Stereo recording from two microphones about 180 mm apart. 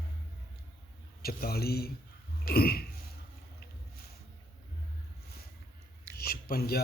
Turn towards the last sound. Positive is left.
turn(degrees=60)  # may be behind; listen again after turning